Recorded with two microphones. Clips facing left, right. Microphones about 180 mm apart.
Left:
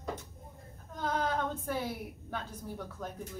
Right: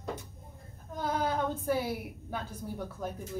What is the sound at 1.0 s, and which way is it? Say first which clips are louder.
A woman's voice: right 2 dB; 10° right (ahead or behind).